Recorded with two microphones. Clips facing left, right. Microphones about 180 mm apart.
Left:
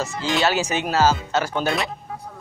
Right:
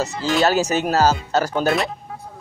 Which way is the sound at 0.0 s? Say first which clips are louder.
Right 3 dB; 40° right (ahead or behind).